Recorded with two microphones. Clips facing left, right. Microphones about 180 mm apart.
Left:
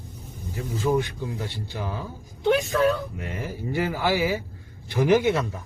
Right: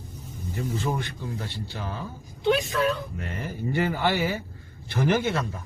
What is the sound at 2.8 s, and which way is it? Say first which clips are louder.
Speech: left 3 dB; 50° left (ahead or behind).